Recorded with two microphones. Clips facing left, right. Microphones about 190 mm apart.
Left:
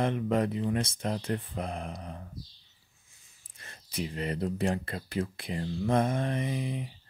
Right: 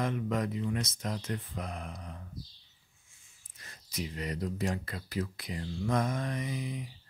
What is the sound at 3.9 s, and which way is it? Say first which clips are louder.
Speech: left 4 dB; 30° left (ahead or behind).